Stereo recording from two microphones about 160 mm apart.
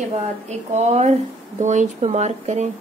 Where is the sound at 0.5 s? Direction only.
45° right (ahead or behind).